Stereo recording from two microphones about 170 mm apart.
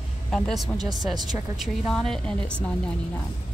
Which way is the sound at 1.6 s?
Centre (ahead or behind).